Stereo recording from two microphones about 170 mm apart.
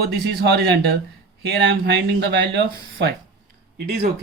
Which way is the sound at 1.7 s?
90° right.